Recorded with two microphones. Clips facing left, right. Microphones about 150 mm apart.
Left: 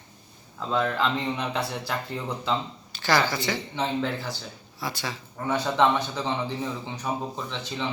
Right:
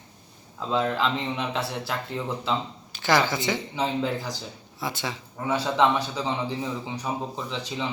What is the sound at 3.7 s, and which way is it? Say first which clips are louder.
Speech: even; 10° right (ahead or behind).